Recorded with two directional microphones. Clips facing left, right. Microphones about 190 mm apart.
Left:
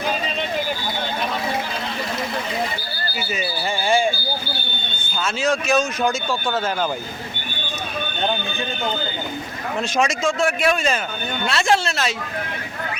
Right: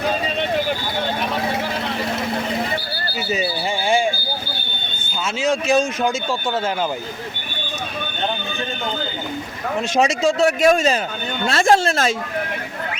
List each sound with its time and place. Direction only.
3.2 s speech: 20° right (ahead or behind)
5.4 s speech: 25° right (ahead or behind)
9.9 s speech: 35° right (ahead or behind)